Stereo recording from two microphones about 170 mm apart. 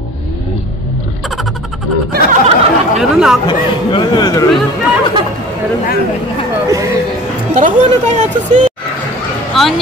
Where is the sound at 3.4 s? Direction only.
25° left (ahead or behind).